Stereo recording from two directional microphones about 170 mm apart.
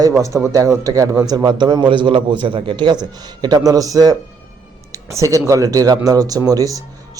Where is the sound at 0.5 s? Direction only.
20° right (ahead or behind).